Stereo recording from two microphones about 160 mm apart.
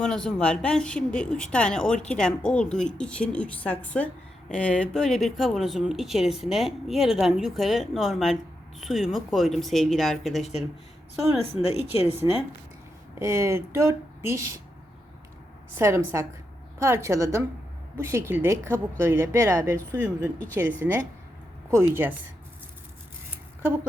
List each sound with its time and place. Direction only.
0.0 s speech: 5° left (ahead or behind)
11.5 s speech: 40° left (ahead or behind)
13.1 s speech: 15° right (ahead or behind)
15.7 s speech: 15° right (ahead or behind)